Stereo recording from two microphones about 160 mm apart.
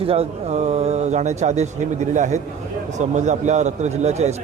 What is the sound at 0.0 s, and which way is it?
A man's voice, 35° right (ahead or behind).